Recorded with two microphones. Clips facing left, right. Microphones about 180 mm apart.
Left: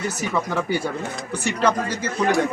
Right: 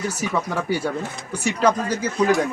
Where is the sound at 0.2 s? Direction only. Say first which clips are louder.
Left 2 dB; 5° right (ahead or behind).